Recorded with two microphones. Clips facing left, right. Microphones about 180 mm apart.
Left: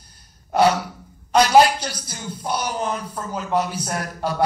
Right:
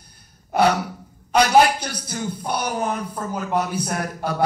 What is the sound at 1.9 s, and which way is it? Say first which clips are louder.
A man's voice: right 4 dB; 55° right (ahead or behind).